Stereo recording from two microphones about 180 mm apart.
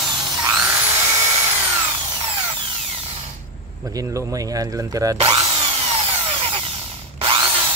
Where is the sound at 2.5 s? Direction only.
30° right (ahead or behind).